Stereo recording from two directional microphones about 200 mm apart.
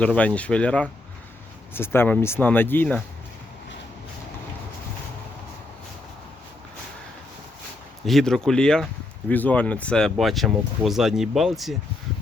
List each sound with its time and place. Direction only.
0.0 s speech: 5° left (ahead or behind)
8.0 s speech: centre (ahead or behind)